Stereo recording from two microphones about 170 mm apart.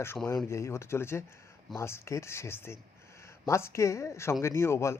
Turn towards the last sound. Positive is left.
turn(degrees=15)  # may be behind; listen again after turning